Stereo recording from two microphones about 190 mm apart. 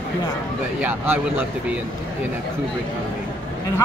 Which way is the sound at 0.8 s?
10° right (ahead or behind).